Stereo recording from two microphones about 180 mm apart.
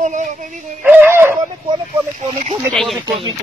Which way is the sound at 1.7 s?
40° right (ahead or behind).